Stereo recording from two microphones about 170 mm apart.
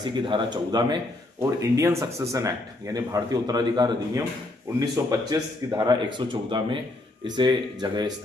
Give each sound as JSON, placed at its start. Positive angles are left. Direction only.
{"t": 0.0, "sound": "speech", "side_deg": -30}